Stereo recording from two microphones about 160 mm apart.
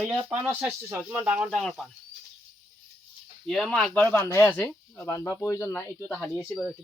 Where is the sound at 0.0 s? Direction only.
5° right (ahead or behind).